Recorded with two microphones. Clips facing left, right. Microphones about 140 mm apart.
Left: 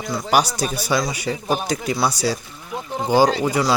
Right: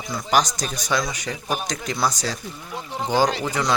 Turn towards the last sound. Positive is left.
turn(degrees=10)  # may be behind; listen again after turning